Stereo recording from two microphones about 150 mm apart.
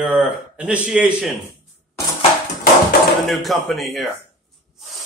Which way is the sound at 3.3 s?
Centre (ahead or behind).